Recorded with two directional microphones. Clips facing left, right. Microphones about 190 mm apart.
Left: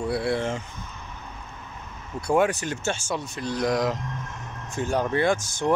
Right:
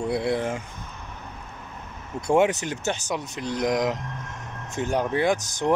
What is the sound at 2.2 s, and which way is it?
Speech, 20° right (ahead or behind).